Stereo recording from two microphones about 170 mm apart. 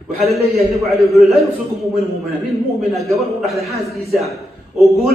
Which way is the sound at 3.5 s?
Centre (ahead or behind).